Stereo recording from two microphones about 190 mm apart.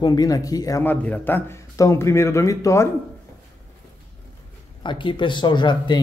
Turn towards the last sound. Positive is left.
turn(degrees=25)  # may be behind; listen again after turning